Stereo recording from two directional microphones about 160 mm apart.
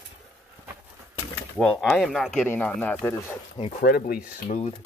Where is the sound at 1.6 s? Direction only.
Centre (ahead or behind).